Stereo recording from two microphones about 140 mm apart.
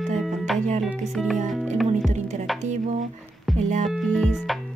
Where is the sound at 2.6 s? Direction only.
55° right (ahead or behind).